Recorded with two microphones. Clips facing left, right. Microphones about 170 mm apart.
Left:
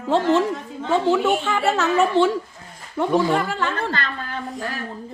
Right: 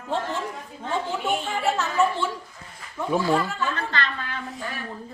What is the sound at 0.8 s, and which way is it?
A woman's voice, 85° left.